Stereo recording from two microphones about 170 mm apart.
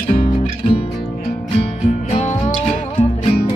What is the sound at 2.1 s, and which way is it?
Music, 40° left (ahead or behind).